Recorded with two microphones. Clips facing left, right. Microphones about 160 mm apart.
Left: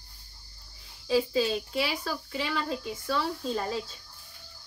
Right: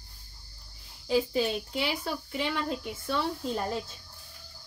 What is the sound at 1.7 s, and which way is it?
Speech, 20° right (ahead or behind).